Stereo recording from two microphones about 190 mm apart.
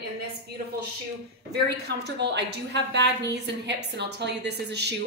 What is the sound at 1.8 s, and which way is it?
A woman's voice, 60° right (ahead or behind).